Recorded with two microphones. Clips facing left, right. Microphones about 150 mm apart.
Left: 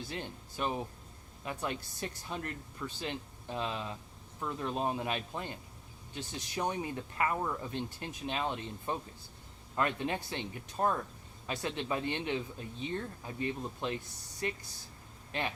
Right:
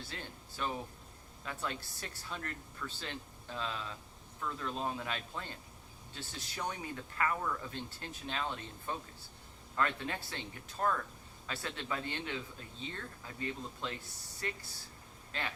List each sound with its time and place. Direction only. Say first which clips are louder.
0.1 s speech: left 6 dB; 20° left (ahead or behind)